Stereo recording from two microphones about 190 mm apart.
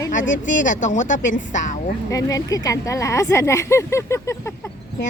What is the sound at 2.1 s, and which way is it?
Speech, 15° left (ahead or behind).